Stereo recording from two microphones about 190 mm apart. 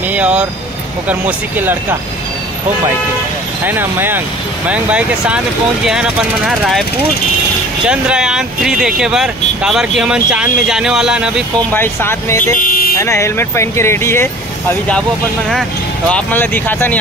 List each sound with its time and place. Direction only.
0.1 s speech: 5° right (ahead or behind)
3.6 s speech: 10° right (ahead or behind)
7.8 s speech: 5° right (ahead or behind)
11.7 s speech: 10° left (ahead or behind)
12.5 s a sound: 50° left (ahead or behind)
13.0 s speech: 15° left (ahead or behind)
16.1 s speech: 5° left (ahead or behind)